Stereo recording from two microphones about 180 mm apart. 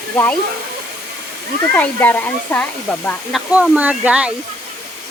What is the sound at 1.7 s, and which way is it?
Speech, 10° left (ahead or behind).